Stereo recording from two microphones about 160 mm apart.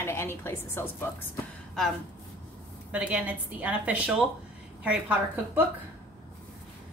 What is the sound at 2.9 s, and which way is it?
A woman's voice, 5° right (ahead or behind).